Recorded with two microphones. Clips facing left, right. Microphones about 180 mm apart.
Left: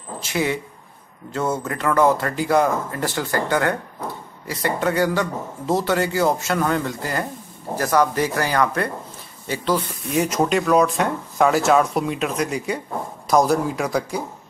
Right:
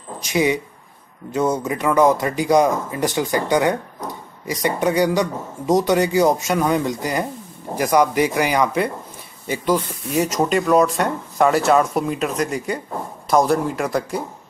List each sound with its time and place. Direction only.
0.2 s a man's voice: 15° right (ahead or behind)
10.3 s speech: centre (ahead or behind)